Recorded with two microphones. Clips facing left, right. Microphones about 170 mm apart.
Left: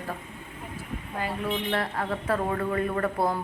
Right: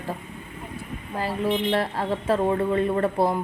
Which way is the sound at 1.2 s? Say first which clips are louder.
Right 5 dB; 30° right (ahead or behind).